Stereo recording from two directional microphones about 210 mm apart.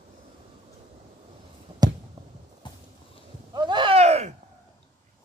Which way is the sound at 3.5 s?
20° right (ahead or behind).